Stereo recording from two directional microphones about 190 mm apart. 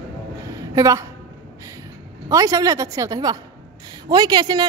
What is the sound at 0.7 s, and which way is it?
Speech, 15° right (ahead or behind).